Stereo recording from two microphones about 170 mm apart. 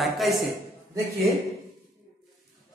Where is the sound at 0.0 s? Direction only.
Centre (ahead or behind).